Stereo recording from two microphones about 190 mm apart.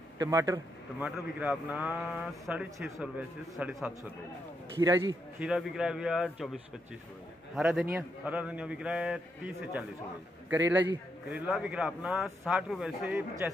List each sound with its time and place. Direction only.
0.2 s speech: 15° right (ahead or behind)
1.0 s a man's voice: 5° right (ahead or behind)
4.7 s a man's voice: 20° right (ahead or behind)
5.4 s a man's voice: 5° right (ahead or behind)
11.2 s a man's voice: 5° right (ahead or behind)